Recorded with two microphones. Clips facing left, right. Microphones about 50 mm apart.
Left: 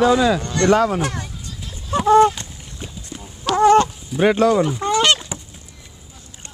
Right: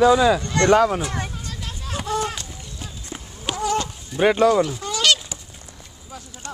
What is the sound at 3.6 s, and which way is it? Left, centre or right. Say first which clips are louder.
Fowl: left 11 dB; left.